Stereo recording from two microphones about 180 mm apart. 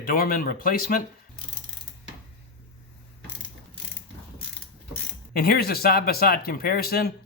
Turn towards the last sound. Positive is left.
turn(degrees=60)  # may be behind; listen again after turning